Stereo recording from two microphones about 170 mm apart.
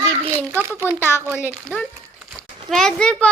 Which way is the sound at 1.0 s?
15° left (ahead or behind).